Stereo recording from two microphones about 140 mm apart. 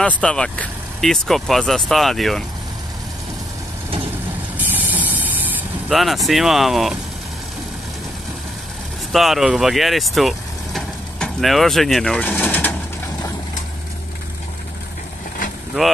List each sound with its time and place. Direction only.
0.0 s speech: 5° left (ahead or behind)
4.6 s spray: 15° right (ahead or behind)
5.9 s speech: centre (ahead or behind)
9.1 s speech: centre (ahead or behind)